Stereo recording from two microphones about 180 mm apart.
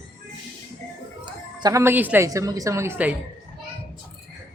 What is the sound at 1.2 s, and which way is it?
A woman's voice, 20° right (ahead or behind).